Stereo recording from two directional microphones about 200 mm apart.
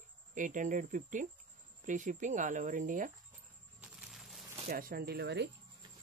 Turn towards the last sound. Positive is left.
turn(degrees=-55)  # may be behind; listen again after turning